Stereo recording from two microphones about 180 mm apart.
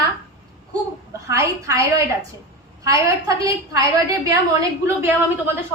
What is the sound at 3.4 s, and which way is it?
Speech, 20° right (ahead or behind).